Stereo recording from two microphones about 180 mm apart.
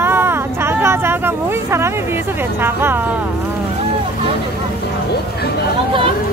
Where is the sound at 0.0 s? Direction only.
15° right (ahead or behind).